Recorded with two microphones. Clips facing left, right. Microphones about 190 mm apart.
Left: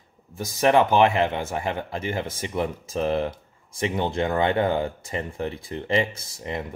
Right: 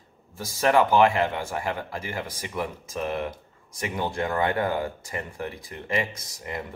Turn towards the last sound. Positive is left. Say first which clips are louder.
# left 3 dB
turn(degrees=25)  # may be behind; listen again after turning